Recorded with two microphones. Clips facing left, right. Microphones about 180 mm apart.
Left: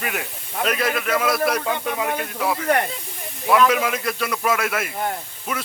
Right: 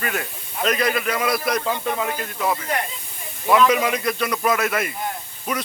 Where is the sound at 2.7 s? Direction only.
60° left (ahead or behind).